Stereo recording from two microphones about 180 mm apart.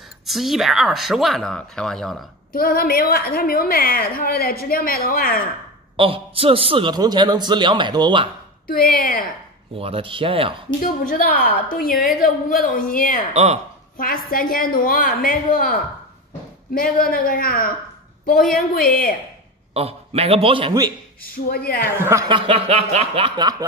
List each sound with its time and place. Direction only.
0.3 s speech: centre (ahead or behind)
2.5 s a woman's voice: 55° left (ahead or behind)
5.9 s a man's voice: 30° right (ahead or behind)
8.6 s a woman's voice: 55° left (ahead or behind)
9.8 s a man's voice: 30° right (ahead or behind)
10.8 s a woman's voice: 55° left (ahead or behind)
13.3 s a man's voice: 35° right (ahead or behind)
13.9 s a woman's voice: 50° left (ahead or behind)
19.7 s a man's voice: 35° right (ahead or behind)
21.2 s a woman's voice: 55° left (ahead or behind)
21.9 s speech: 15° right (ahead or behind)
22.3 s a man's voice: 30° right (ahead or behind)